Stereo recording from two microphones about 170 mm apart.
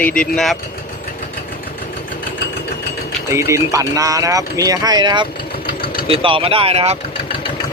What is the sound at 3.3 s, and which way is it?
Speech, 15° right (ahead or behind).